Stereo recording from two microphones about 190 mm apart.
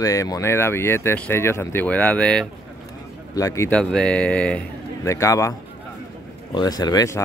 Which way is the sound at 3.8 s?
5° left (ahead or behind).